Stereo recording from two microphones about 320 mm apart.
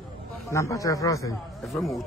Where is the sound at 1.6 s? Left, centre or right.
Centre.